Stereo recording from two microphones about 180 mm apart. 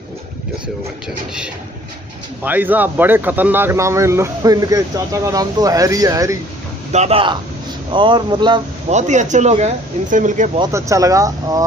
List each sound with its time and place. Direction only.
2.4 s speech: 10° right (ahead or behind)
6.9 s speech: 35° right (ahead or behind)
8.9 s speech: 40° right (ahead or behind)
10.6 s speech: 15° right (ahead or behind)